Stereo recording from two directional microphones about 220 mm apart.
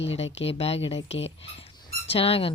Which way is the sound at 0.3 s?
25° left (ahead or behind).